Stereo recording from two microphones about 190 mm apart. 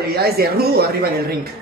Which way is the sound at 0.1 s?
55° right (ahead or behind).